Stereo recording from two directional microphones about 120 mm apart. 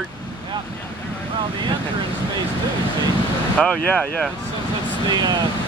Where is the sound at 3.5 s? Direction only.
10° left (ahead or behind).